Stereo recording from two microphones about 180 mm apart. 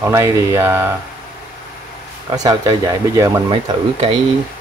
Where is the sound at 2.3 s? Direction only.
20° right (ahead or behind).